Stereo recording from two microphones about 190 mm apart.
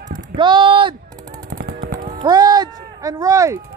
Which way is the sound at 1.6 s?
55° right (ahead or behind).